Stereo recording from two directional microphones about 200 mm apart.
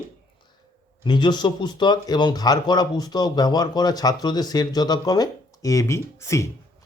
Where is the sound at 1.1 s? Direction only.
20° left (ahead or behind).